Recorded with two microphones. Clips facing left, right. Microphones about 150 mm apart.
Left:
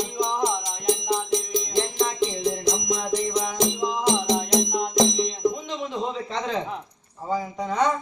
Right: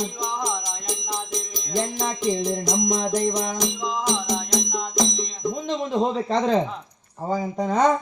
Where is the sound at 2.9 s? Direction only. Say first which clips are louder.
Right 3 dB; 40° right (ahead or behind).